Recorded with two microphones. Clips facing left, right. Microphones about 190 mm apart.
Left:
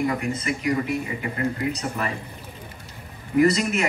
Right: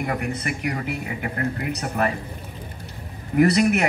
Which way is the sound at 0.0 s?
60° right (ahead or behind).